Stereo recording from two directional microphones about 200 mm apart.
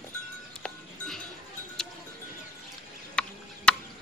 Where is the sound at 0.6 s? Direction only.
5° left (ahead or behind).